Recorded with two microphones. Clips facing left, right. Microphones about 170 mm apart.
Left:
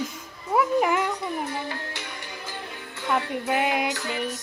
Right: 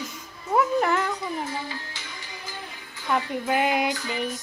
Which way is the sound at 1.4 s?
60° left (ahead or behind).